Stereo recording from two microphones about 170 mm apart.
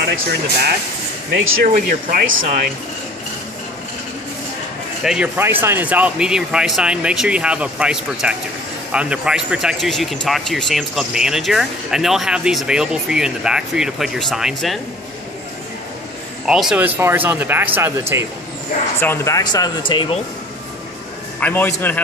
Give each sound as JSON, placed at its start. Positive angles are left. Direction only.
{"t": 1.3, "sound": "speech", "side_deg": -60}
{"t": 5.0, "sound": "speech", "side_deg": -5}
{"t": 16.4, "sound": "speech", "side_deg": -5}
{"t": 18.9, "sound": "speech", "side_deg": 15}
{"t": 21.4, "sound": "a man's voice", "side_deg": 10}